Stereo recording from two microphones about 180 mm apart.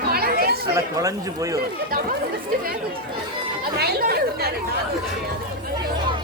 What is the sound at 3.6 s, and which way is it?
Chatter, 60° right (ahead or behind).